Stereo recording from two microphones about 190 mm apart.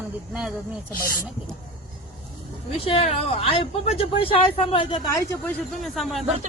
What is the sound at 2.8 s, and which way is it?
Speech, 30° left (ahead or behind).